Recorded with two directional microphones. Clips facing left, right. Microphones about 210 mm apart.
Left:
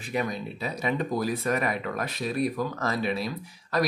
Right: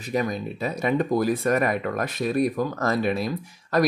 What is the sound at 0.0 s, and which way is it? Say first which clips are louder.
Speech: right 4 dB; 40° right (ahead or behind).